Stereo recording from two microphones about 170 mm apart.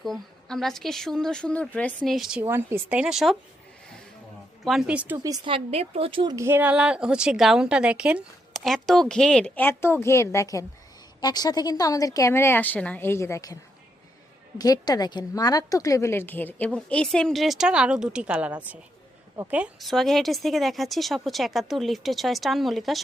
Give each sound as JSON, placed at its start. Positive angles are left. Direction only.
{"t": 0.0, "sound": "a woman's voice", "side_deg": 0}
{"t": 4.6, "sound": "a woman's voice", "side_deg": 0}
{"t": 5.1, "sound": "a woman's voice", "side_deg": -20}
{"t": 5.5, "sound": "speech", "side_deg": -35}
{"t": 6.3, "sound": "a woman's voice", "side_deg": -15}
{"t": 14.6, "sound": "a woman's voice", "side_deg": 20}